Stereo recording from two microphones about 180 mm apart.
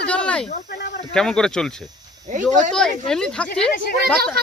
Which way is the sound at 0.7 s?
65° left (ahead or behind).